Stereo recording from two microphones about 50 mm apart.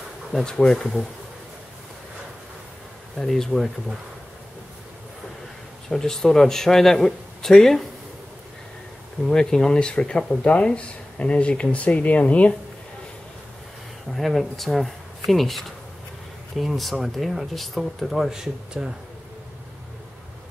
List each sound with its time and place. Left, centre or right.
0.3 s a man's voice: centre
3.2 s a man's voice: centre
5.9 s a man's voice: centre
9.2 s speech: centre; by 12.5 s left
14.1 s speech: centre